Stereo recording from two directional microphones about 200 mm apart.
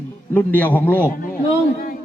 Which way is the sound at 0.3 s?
10° left (ahead or behind).